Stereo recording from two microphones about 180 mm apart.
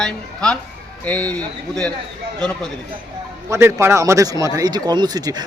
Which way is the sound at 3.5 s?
15° right (ahead or behind).